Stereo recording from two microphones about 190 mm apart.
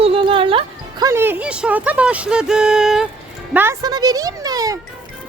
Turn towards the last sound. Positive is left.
turn(degrees=-20)  # may be behind; listen again after turning